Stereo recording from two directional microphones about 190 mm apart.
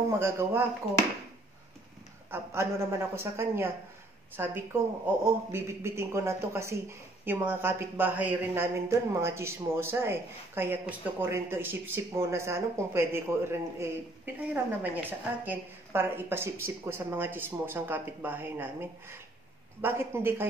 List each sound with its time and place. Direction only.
0.2 s speech: 10° right (ahead or behind)
2.3 s speech: 15° right (ahead or behind)